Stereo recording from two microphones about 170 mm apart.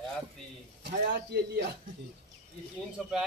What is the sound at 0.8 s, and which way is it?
Speech, 75° right (ahead or behind).